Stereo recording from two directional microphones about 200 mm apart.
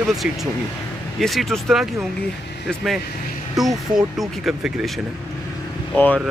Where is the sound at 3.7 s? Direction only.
20° right (ahead or behind).